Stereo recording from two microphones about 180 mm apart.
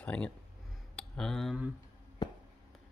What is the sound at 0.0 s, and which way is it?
Speech, 5° left (ahead or behind).